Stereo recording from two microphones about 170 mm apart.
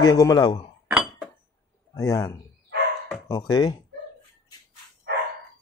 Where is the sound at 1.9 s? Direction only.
20° left (ahead or behind).